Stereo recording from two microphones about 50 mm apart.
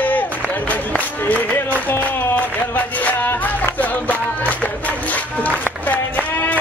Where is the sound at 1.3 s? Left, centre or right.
Left.